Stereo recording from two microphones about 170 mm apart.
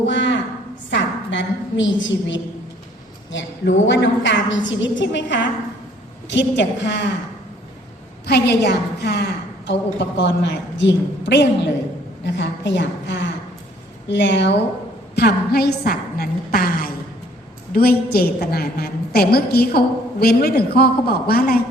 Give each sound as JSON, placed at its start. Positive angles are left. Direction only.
{"t": 0.0, "sound": "a sound", "side_deg": 90}
{"t": 3.3, "sound": "a woman's voice", "side_deg": 90}
{"t": 8.3, "sound": "a woman's voice", "side_deg": 80}
{"t": 15.1, "sound": "a woman's voice", "side_deg": 70}